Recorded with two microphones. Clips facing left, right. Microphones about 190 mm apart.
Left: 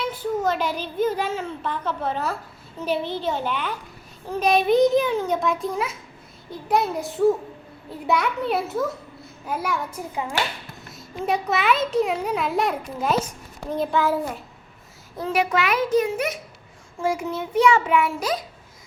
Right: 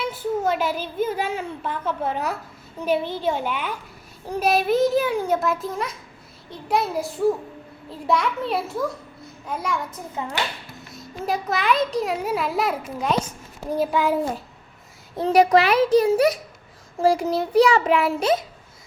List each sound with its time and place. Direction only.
0.0 s child singing: 10° right (ahead or behind)
0.7 s a child's voice: 45° right (ahead or behind)
1.0 s a child's voice: 10° right (ahead or behind)
13.7 s a child's voice: 10° right (ahead or behind)
15.2 s a child's voice: 40° right (ahead or behind)